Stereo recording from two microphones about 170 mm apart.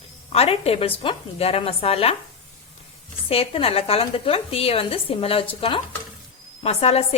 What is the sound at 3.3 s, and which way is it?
A woman's voice, 35° left (ahead or behind).